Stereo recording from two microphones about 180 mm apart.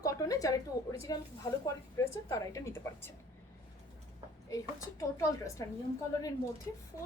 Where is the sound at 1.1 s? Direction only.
20° left (ahead or behind).